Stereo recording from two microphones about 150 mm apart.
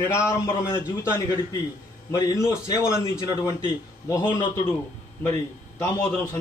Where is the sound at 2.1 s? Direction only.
20° left (ahead or behind).